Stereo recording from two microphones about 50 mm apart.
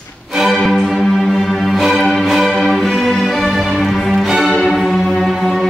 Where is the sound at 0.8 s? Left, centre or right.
Centre.